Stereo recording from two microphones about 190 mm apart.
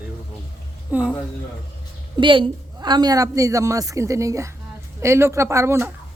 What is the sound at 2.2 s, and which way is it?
A woman's voice, 25° right (ahead or behind).